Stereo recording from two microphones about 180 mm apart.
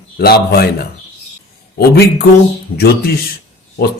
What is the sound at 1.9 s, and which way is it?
A man's voice, 60° left (ahead or behind).